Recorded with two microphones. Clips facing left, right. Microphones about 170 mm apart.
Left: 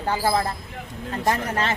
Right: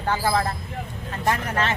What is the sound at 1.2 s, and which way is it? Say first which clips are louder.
Speech: even; 40° left (ahead or behind).